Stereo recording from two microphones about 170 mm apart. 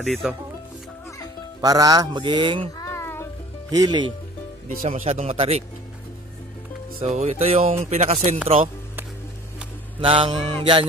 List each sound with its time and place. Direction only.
0.0 s speech: centre (ahead or behind)
1.6 s a man's voice: 20° right (ahead or behind)
2.8 s music: 15° left (ahead or behind)
3.7 s a man's voice: 20° right (ahead or behind)
4.8 s speech: 50° right (ahead or behind)
5.2 s speech: 35° right (ahead or behind)
7.0 s speech: 35° right (ahead or behind)
9.9 s speech: 30° right (ahead or behind)